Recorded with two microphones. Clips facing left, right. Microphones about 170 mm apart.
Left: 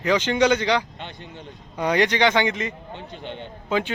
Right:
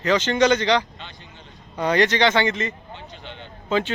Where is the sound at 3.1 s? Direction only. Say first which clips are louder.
Left 5 dB; 55° left (ahead or behind).